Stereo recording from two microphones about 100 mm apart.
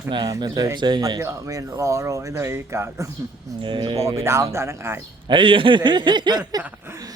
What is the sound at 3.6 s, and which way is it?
Speech, 55° right (ahead or behind).